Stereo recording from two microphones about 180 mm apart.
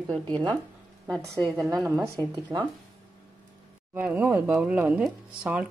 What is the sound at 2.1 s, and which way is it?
Speech, 20° right (ahead or behind).